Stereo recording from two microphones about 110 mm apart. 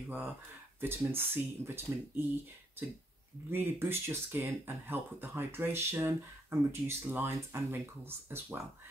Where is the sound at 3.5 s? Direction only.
20° right (ahead or behind).